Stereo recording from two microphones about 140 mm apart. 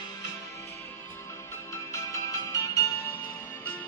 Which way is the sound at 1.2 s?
20° left (ahead or behind).